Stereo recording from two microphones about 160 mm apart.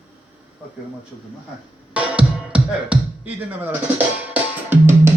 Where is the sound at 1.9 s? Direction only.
5° right (ahead or behind).